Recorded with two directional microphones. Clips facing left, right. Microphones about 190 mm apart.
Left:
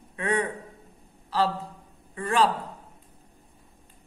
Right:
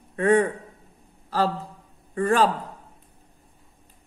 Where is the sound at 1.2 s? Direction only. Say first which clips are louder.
Right 1 dB; 50° right (ahead or behind).